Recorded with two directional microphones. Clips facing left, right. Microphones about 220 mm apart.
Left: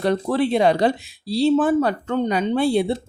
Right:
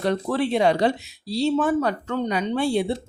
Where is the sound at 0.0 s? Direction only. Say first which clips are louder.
Left 3 dB; 35° left (ahead or behind).